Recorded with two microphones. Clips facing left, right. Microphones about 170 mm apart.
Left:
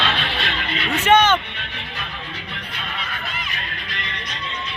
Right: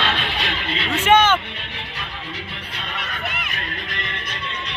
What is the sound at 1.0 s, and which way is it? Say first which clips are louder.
Speech: even; 10° right (ahead or behind).